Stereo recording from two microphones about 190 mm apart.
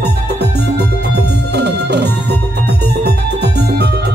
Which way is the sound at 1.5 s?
60° right (ahead or behind).